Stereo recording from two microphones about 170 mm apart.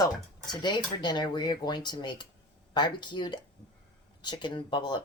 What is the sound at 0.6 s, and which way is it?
Speech, 25° left (ahead or behind).